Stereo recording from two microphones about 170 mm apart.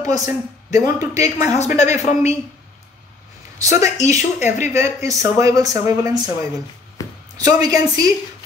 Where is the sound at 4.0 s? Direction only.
45° left (ahead or behind).